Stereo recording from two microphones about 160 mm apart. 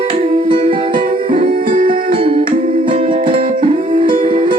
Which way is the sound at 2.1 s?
35° right (ahead or behind).